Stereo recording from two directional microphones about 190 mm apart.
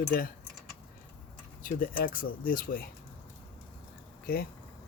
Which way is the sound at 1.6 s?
45° left (ahead or behind).